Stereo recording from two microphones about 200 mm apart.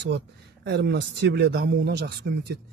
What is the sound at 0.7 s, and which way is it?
Speech, 60° right (ahead or behind).